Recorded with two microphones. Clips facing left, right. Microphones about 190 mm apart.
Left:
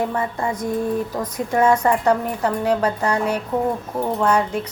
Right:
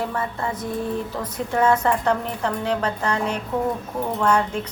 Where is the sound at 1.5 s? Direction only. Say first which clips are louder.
Left 3 dB; 10° left (ahead or behind).